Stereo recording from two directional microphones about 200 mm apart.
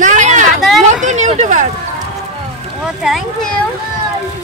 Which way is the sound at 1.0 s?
35° right (ahead or behind).